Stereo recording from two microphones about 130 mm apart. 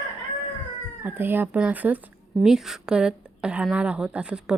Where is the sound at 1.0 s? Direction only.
15° right (ahead or behind).